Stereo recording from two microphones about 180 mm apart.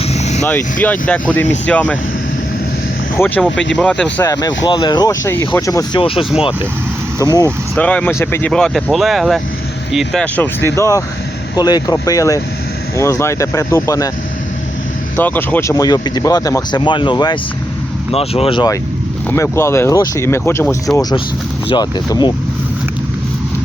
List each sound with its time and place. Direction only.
0.1 s vehicle: 40° left (ahead or behind)
0.4 s speech: 10° left (ahead or behind)
3.2 s speech: 10° left (ahead or behind)
3.5 s speech: 90° left
3.8 s speech: 5° left (ahead or behind)
4.3 s speech: 20° left (ahead or behind)
6.0 s speech: 30° left (ahead or behind)
7.8 s speech: 5° left (ahead or behind)
15.1 s speech: 10° left (ahead or behind)